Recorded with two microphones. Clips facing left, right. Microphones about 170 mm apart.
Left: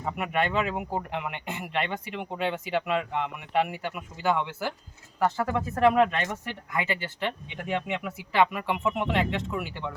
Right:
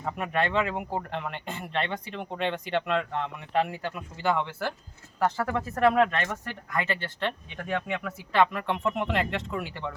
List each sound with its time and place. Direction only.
0.0 s speech: 5° left (ahead or behind)
5.8 s speech: 15° left (ahead or behind)